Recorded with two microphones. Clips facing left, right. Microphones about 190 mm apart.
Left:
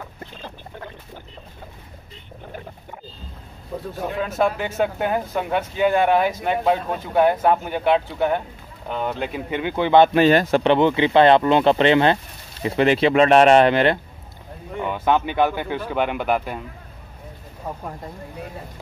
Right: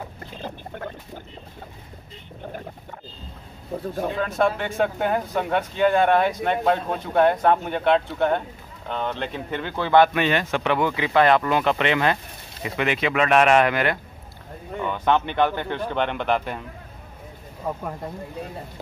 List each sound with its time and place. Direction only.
4.2 s speech: 5° left (ahead or behind); by 10.1 s 20° left (ahead or behind)
10.1 s speech: 35° left (ahead or behind)
14.9 s speech: 10° left (ahead or behind)